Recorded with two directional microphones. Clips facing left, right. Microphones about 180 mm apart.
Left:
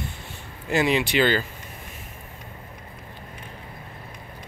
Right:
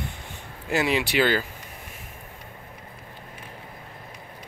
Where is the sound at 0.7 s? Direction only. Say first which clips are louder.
Left 2 dB; 5° right (ahead or behind).